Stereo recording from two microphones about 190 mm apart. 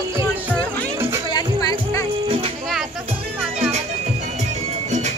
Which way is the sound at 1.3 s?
20° left (ahead or behind).